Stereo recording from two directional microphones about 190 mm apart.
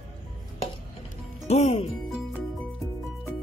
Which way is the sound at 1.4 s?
35° left (ahead or behind).